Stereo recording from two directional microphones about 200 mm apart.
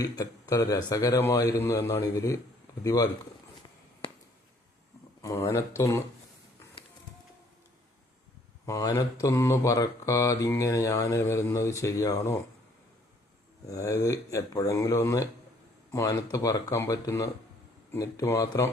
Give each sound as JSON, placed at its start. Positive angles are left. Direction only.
{"t": 0.0, "sound": "mantra", "side_deg": 20}
{"t": 5.2, "sound": "mantra", "side_deg": 15}
{"t": 8.6, "sound": "mantra", "side_deg": 15}
{"t": 13.7, "sound": "mantra", "side_deg": 15}